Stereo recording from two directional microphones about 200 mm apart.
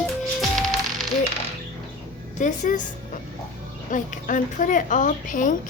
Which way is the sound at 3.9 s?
40° left (ahead or behind).